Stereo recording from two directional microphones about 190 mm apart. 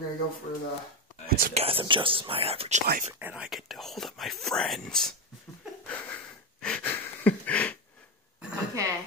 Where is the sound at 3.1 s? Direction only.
10° right (ahead or behind).